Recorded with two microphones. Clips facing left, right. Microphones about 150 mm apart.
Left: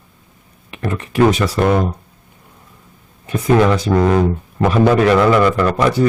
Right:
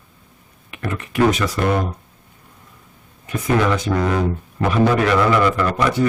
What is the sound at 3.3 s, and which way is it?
Speech, 30° left (ahead or behind).